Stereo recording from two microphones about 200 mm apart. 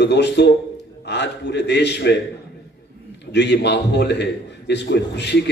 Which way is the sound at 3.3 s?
60° left (ahead or behind).